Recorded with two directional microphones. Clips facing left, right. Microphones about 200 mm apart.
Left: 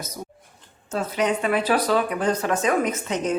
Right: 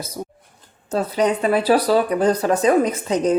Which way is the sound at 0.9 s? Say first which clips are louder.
Right 4 dB; 35° right (ahead or behind).